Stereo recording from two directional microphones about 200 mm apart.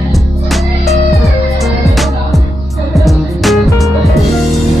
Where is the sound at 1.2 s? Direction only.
Centre (ahead or behind).